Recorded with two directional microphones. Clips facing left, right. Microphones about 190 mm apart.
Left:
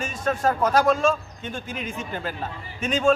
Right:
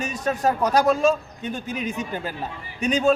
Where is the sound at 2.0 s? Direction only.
15° right (ahead or behind).